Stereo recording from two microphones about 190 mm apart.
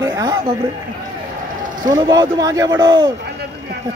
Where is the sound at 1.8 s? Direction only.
20° right (ahead or behind).